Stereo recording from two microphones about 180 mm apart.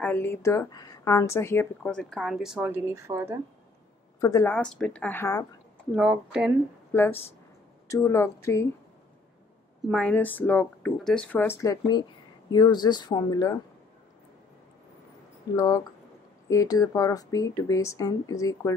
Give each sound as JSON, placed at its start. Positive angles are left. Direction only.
{"t": 0.0, "sound": "speech", "side_deg": 10}
{"t": 4.2, "sound": "speech", "side_deg": 20}
{"t": 4.6, "sound": "speech", "side_deg": 5}
{"t": 5.9, "sound": "speech", "side_deg": -5}
{"t": 6.9, "sound": "speech", "side_deg": 10}
{"t": 9.8, "sound": "speech", "side_deg": 5}
{"t": 15.5, "sound": "speech", "side_deg": 20}